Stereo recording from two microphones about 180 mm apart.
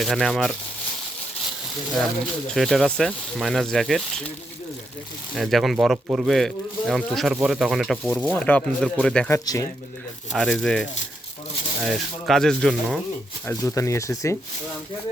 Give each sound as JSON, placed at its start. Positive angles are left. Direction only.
{"t": 0.0, "sound": "speech", "side_deg": 0}
{"t": 2.5, "sound": "speech", "side_deg": 0}
{"t": 5.3, "sound": "speech", "side_deg": 0}
{"t": 9.3, "sound": "speech", "side_deg": 15}
{"t": 10.3, "sound": "speech", "side_deg": 0}
{"t": 13.5, "sound": "speech", "side_deg": 15}